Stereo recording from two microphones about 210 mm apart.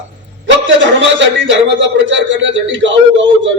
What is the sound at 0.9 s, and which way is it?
A man's voice, 60° right (ahead or behind).